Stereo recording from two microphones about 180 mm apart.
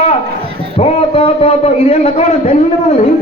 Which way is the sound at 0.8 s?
35° left (ahead or behind).